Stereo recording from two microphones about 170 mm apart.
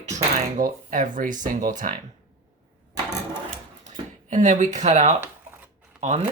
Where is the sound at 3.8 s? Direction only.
45° right (ahead or behind).